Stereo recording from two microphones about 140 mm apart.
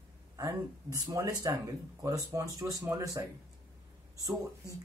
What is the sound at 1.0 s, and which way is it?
Speech, 25° right (ahead or behind).